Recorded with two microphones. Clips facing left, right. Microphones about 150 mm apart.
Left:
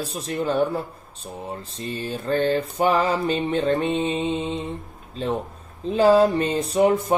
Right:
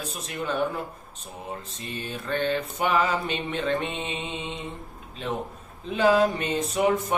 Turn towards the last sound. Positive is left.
turn(degrees=30)  # may be behind; listen again after turning